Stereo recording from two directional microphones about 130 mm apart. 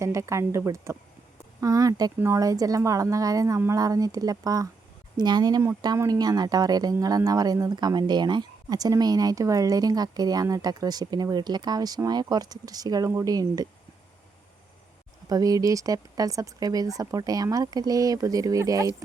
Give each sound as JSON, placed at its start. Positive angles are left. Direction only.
{"t": 0.0, "sound": "speech", "side_deg": -25}
{"t": 15.3, "sound": "speech", "side_deg": -30}